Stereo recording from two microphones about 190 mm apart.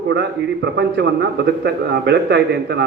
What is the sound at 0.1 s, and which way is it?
A man's voice, 65° right (ahead or behind).